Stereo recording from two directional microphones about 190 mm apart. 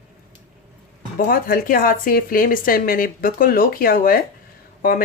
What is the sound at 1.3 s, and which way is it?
Speech, 50° left (ahead or behind).